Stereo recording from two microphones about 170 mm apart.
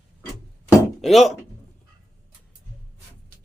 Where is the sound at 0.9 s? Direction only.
Centre (ahead or behind).